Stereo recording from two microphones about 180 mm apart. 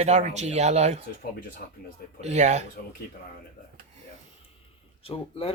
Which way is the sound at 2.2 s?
40° right (ahead or behind).